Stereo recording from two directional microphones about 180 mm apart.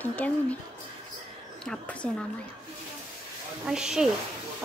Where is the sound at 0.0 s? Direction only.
10° left (ahead or behind).